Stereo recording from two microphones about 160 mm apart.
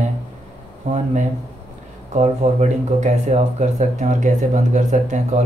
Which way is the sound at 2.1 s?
45° right (ahead or behind).